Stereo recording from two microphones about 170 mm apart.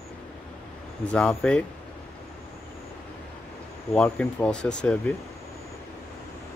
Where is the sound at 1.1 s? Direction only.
5° left (ahead or behind).